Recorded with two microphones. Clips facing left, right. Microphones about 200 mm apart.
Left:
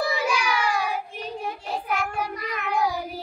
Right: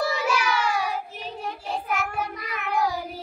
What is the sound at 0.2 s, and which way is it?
Child singing, 5° right (ahead or behind).